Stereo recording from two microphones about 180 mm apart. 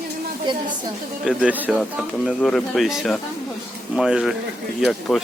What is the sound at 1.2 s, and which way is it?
Speech, 5° right (ahead or behind).